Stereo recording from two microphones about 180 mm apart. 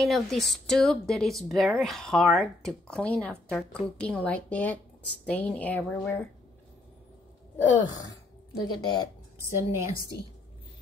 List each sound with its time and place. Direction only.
0.0 s speech: centre (ahead or behind)
8.8 s speech: 25° left (ahead or behind)
9.4 s a woman's voice: 15° right (ahead or behind)